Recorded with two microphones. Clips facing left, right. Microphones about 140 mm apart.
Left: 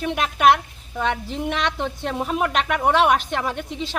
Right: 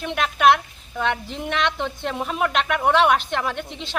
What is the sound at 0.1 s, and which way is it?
A woman's voice, 5° left (ahead or behind).